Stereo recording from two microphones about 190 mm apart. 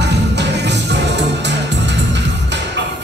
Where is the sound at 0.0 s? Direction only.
65° right (ahead or behind).